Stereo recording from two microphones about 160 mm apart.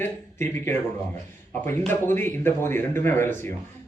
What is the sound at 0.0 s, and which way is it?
Speech, 15° left (ahead or behind).